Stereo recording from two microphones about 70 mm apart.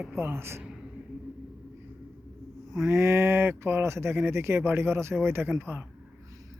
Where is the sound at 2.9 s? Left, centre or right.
Right.